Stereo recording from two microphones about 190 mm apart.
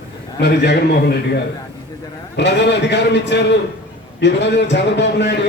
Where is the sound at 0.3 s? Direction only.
65° left (ahead or behind).